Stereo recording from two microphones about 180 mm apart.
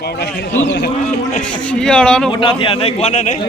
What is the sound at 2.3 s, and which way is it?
A man's voice, 30° left (ahead or behind).